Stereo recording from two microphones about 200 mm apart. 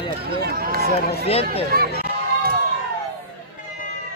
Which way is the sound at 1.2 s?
30° left (ahead or behind).